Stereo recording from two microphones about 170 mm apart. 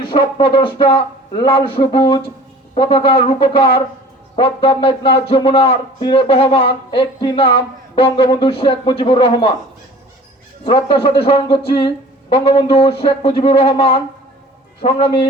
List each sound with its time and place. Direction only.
0.1 s a man's voice: 30° left (ahead or behind)
10.6 s a man's voice: 30° left (ahead or behind)